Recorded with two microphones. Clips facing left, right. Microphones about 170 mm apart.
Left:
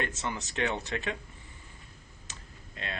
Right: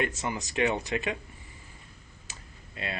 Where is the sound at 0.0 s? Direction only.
10° right (ahead or behind).